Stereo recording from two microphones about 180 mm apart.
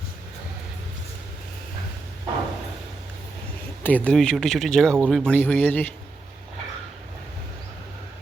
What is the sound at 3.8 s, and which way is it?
Speech, 10° left (ahead or behind).